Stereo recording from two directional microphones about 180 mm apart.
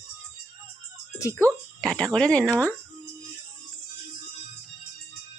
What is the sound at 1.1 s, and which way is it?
Speech, 15° left (ahead or behind).